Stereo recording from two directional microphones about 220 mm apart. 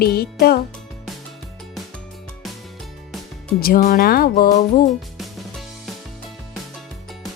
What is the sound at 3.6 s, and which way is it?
Speech, 40° left (ahead or behind).